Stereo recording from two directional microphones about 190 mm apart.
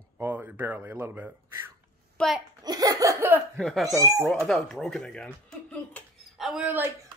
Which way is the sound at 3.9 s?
15° right (ahead or behind).